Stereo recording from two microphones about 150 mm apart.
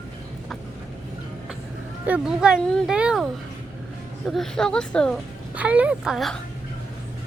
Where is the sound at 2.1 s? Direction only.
5° right (ahead or behind).